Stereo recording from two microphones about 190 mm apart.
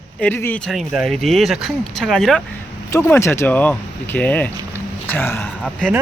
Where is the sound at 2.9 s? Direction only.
15° left (ahead or behind).